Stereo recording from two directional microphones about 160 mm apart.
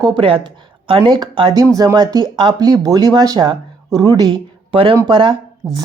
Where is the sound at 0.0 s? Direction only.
30° right (ahead or behind).